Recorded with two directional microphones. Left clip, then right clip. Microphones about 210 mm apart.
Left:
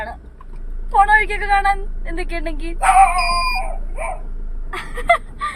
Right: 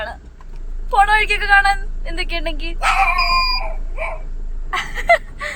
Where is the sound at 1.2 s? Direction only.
50° right (ahead or behind).